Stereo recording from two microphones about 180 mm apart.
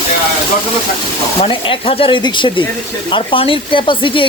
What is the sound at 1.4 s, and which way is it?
Speech, 30° left (ahead or behind).